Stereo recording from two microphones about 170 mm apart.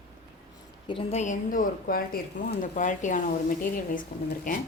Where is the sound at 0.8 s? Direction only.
35° left (ahead or behind).